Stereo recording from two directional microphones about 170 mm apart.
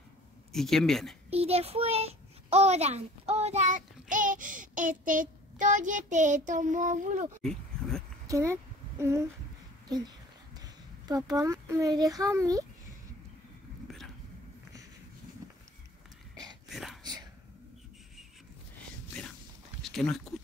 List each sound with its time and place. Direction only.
0.5 s speech: centre (ahead or behind)
1.3 s a child's voice: 35° right (ahead or behind)
7.4 s speech: 5° left (ahead or behind)
8.3 s a sound: 15° right (ahead or behind)
9.8 s a child's voice: 25° right (ahead or behind)
16.6 s whispering: centre (ahead or behind)
17.0 s whispering: 25° right (ahead or behind)
19.8 s a sound: centre (ahead or behind)